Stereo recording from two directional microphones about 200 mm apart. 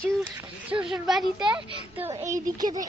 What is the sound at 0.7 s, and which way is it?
Speech, 5° right (ahead or behind).